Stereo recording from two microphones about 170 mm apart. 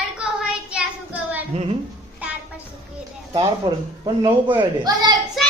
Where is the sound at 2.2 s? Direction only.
10° right (ahead or behind).